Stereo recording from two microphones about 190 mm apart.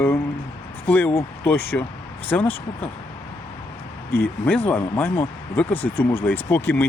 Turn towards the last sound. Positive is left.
turn(degrees=10)  # may be behind; listen again after turning